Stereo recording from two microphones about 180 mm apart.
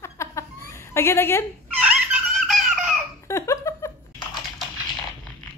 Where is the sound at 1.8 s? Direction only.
5° right (ahead or behind).